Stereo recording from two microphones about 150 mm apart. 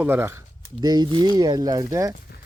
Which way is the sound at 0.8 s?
30° right (ahead or behind).